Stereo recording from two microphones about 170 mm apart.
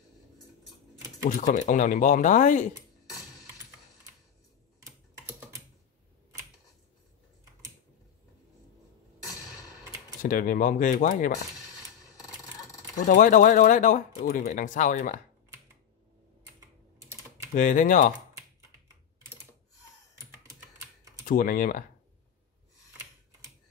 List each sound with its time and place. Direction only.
1.4 s speech: 45° left (ahead or behind)
9.3 s a sound: 20° left (ahead or behind)
10.2 s speech: 50° left (ahead or behind)
12.0 s a sound: 20° left (ahead or behind)
13.0 s speech: 50° left (ahead or behind)
17.6 s speech: 50° left (ahead or behind)
21.3 s speech: 55° left (ahead or behind)